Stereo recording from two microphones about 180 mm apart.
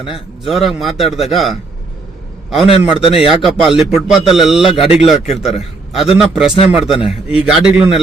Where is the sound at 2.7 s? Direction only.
30° left (ahead or behind).